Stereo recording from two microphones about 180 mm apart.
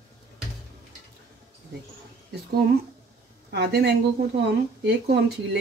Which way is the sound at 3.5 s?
70° right (ahead or behind).